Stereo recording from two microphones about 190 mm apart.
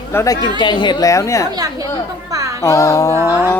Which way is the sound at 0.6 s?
25° left (ahead or behind).